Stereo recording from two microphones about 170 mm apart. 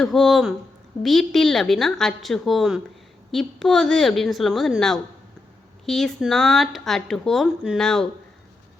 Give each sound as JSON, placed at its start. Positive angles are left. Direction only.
{"t": 0.0, "sound": "speech", "side_deg": 0}